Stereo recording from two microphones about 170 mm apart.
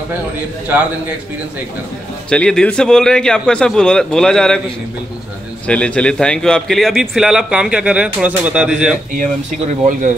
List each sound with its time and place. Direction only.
2.2 s a man's voice: 5° left (ahead or behind)
5.7 s a man's voice: 5° left (ahead or behind)
9.2 s speech: 50° right (ahead or behind)